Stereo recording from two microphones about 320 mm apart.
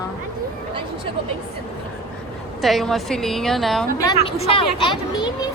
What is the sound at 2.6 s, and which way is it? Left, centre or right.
A woman's voice, centre.